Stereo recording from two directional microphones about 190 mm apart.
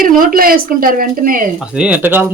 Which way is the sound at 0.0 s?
50° right (ahead or behind).